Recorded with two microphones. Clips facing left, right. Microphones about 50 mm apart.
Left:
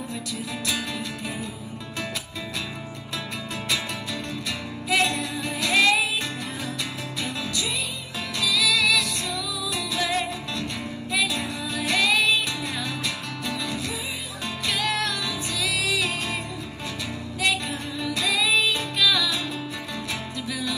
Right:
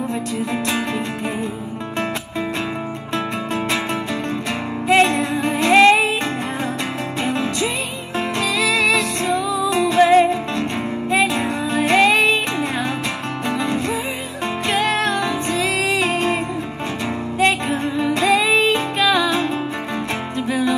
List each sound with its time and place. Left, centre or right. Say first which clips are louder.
0.1 s music: right 9 dB; right
4.8 s music: right 8 dB; right
7.2 s music: right 9 dB; right
17.4 s music: right 8 dB; right